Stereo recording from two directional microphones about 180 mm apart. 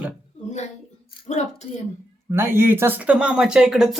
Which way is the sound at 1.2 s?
40° left (ahead or behind).